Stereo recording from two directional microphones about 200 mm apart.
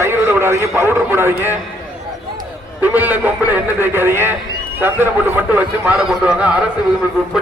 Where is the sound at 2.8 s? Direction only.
10° right (ahead or behind).